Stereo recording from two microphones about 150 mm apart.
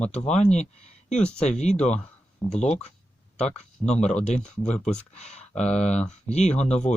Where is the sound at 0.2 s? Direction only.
50° left (ahead or behind).